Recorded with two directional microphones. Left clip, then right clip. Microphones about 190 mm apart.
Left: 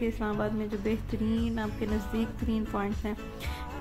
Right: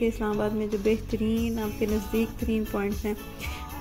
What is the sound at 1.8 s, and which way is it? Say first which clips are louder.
Speech: right 9 dB; 35° left (ahead or behind).